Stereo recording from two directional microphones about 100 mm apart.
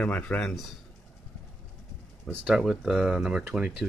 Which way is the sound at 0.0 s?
15° left (ahead or behind).